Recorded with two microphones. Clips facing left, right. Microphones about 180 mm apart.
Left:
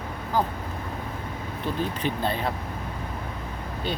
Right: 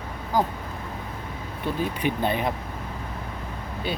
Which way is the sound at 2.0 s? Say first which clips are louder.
Right 4 dB; 15° right (ahead or behind).